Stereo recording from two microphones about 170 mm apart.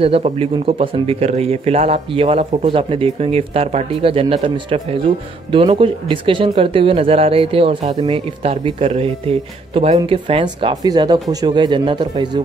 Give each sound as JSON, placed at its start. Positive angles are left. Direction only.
{"t": 0.0, "sound": "speech", "side_deg": -35}